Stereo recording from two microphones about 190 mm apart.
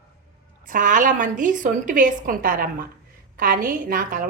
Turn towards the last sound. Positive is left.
turn(degrees=-45)  # may be behind; listen again after turning